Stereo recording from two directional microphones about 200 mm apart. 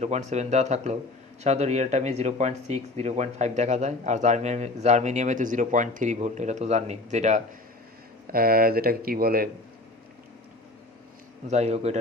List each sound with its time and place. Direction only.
0.0 s speech: 35° right (ahead or behind)
8.3 s speech: 45° right (ahead or behind)
11.4 s speech: 35° right (ahead or behind)